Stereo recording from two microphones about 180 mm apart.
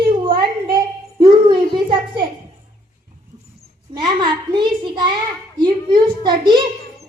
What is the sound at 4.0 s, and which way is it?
A woman's voice, 25° right (ahead or behind).